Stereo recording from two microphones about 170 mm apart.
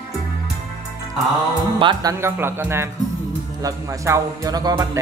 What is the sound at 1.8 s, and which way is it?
Speech, 30° right (ahead or behind).